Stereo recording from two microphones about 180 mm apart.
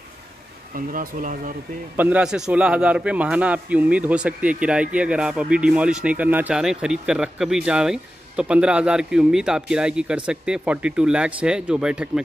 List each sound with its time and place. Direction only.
0.7 s speech: 50° right (ahead or behind)
2.0 s a man's voice: 10° right (ahead or behind)